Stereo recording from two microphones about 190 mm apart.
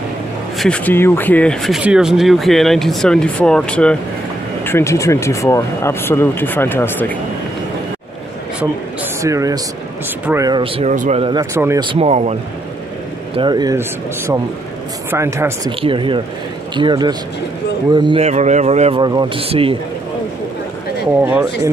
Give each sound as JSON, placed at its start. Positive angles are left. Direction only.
{"t": 0.6, "sound": "speech", "side_deg": 5}
{"t": 9.2, "sound": "speech", "side_deg": -15}
{"t": 11.5, "sound": "speech", "side_deg": -15}
{"t": 11.8, "sound": "speech", "side_deg": -30}
{"t": 13.3, "sound": "speech", "side_deg": -25}
{"t": 15.8, "sound": "speech", "side_deg": -25}
{"t": 21.2, "sound": "speech", "side_deg": -10}